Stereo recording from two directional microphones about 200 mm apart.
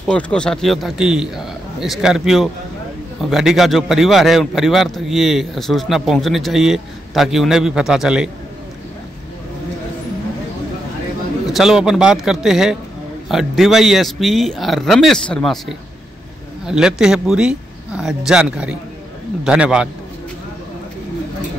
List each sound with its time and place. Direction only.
0.0 s a man's voice: 5° left (ahead or behind)
11.4 s a man's voice: centre (ahead or behind)